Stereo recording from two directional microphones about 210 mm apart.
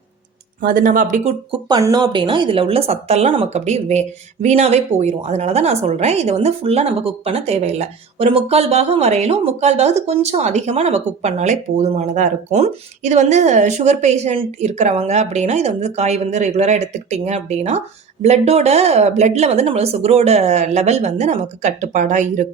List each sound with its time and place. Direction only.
0.6 s a woman's voice: 40° right (ahead or behind)
1.6 s a woman's voice: 20° right (ahead or behind); by 22.4 s 35° right (ahead or behind)